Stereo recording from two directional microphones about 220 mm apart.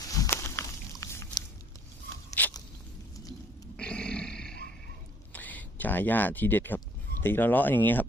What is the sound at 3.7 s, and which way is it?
Roaring cats, 5° left (ahead or behind).